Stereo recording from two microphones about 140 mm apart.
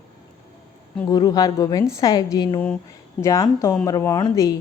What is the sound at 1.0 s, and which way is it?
A woman's voice, 30° left (ahead or behind).